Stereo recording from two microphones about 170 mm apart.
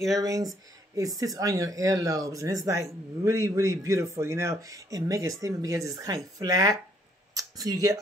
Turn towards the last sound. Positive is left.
turn(degrees=-20)  # may be behind; listen again after turning